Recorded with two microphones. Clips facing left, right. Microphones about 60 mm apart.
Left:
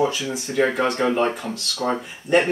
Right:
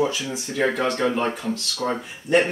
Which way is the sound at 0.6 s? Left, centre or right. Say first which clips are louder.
Left 2 dB; centre.